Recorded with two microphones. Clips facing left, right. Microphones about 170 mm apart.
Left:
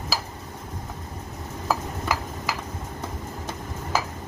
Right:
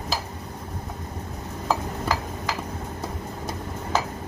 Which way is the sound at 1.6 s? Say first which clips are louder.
Right 1 dB; 5° left (ahead or behind).